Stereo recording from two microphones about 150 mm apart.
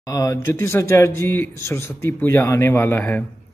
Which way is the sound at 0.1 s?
20° left (ahead or behind).